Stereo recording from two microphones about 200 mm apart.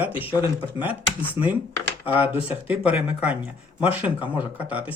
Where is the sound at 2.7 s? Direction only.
5° right (ahead or behind).